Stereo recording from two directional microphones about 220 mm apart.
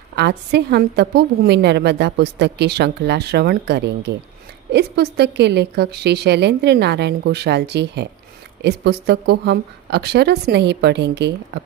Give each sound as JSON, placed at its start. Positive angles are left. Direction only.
{"t": 0.1, "sound": "a woman's voice", "side_deg": -50}